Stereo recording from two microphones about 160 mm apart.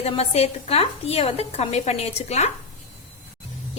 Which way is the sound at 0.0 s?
40° left (ahead or behind).